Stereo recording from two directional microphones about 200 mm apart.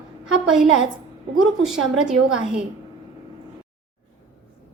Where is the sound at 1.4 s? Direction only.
Centre (ahead or behind).